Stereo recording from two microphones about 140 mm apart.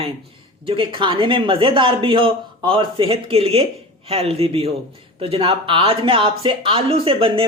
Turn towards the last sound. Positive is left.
turn(degrees=-40)  # may be behind; listen again after turning